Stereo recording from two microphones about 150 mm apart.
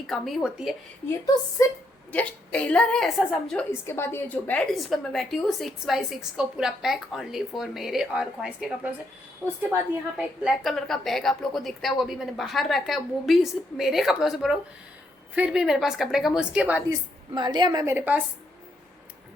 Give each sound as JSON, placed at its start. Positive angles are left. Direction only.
{"t": 0.1, "sound": "a woman's voice", "side_deg": 0}
{"t": 1.6, "sound": "a woman's voice", "side_deg": 25}
{"t": 2.1, "sound": "a woman's voice", "side_deg": 10}
{"t": 3.7, "sound": "a woman's voice", "side_deg": 15}
{"t": 4.7, "sound": "a woman's voice", "side_deg": 0}
{"t": 10.4, "sound": "a woman's voice", "side_deg": 0}
{"t": 17.3, "sound": "a woman's voice", "side_deg": -30}
{"t": 17.9, "sound": "a woman's voice", "side_deg": -10}